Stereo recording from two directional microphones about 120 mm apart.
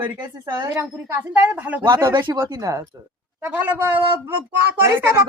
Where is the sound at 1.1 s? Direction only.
15° right (ahead or behind).